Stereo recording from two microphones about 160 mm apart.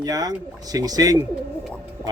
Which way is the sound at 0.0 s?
25° right (ahead or behind).